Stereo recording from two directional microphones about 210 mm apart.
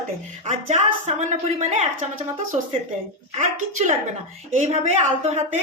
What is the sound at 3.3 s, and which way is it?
Speech, 35° right (ahead or behind).